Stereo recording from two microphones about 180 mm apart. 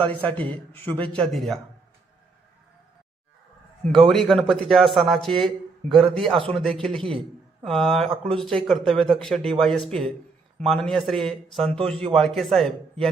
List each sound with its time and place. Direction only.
0.1 s speech: 10° left (ahead or behind)
4.1 s a man's voice: centre (ahead or behind)
6.3 s a man's voice: 30° right (ahead or behind)
6.6 s a man's voice: 5° left (ahead or behind)